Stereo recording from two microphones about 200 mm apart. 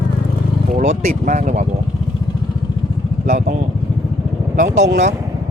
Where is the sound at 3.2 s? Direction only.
40° right (ahead or behind).